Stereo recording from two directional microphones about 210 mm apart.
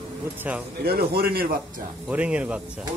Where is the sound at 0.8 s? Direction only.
45° right (ahead or behind).